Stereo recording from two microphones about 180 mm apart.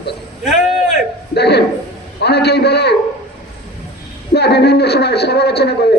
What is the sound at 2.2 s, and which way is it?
Speech, 65° left (ahead or behind).